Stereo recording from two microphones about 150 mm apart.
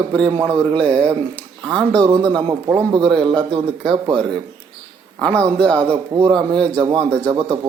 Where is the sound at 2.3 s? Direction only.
30° right (ahead or behind).